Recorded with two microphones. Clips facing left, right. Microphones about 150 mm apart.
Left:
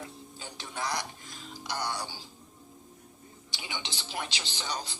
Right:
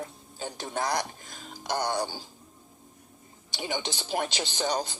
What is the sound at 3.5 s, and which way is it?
Speech, 45° right (ahead or behind).